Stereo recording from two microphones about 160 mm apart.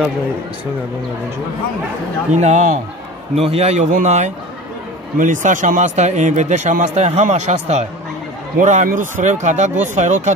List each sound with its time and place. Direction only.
2.3 s speech: 45° right (ahead or behind)
3.3 s speech: 40° right (ahead or behind)